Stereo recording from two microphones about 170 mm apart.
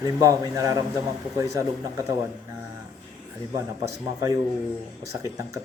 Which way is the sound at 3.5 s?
20° right (ahead or behind).